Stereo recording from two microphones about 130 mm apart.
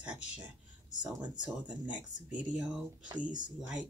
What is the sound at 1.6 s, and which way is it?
Speech, 10° right (ahead or behind).